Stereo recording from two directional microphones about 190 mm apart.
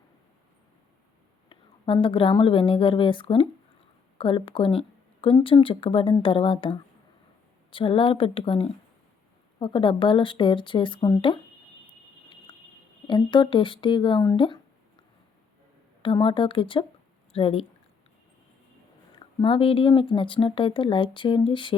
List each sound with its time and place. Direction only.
1.5 s a woman's voice: 25° left (ahead or behind)
13.1 s a woman's voice: 25° left (ahead or behind)
16.0 s a woman's voice: 25° left (ahead or behind)
19.4 s a woman's voice: 30° left (ahead or behind)